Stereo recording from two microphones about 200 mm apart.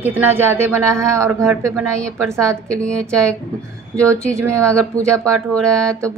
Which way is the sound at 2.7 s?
5° left (ahead or behind).